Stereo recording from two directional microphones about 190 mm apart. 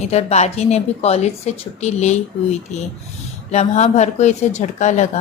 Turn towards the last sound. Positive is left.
turn(degrees=40)  # may be behind; listen again after turning